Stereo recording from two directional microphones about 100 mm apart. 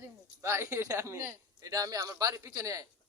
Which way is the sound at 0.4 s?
25° right (ahead or behind).